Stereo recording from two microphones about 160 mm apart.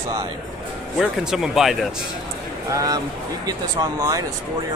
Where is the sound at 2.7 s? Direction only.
20° right (ahead or behind).